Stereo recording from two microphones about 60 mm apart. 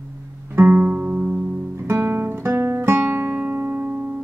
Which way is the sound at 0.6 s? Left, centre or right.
Right.